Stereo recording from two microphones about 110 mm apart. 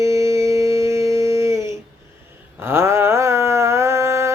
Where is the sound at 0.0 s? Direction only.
25° right (ahead or behind).